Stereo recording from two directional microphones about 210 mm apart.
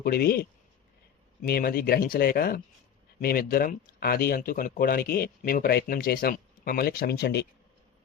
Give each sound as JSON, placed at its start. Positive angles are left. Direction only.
{"t": 0.0, "sound": "speech", "side_deg": 50}